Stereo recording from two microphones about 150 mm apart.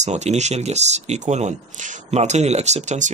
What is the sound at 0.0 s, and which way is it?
A man's voice, 50° right (ahead or behind).